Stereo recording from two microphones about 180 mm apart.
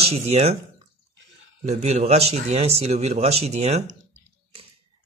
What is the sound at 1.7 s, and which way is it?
Speech, 40° right (ahead or behind).